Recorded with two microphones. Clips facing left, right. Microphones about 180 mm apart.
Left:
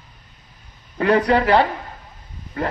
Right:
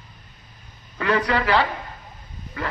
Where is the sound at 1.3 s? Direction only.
50° left (ahead or behind).